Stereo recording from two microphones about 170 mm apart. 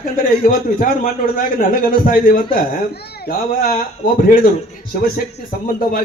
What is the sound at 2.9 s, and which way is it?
A man's voice, 70° left (ahead or behind).